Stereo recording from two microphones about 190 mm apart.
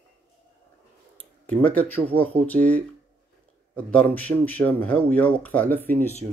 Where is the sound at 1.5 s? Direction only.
10° left (ahead or behind).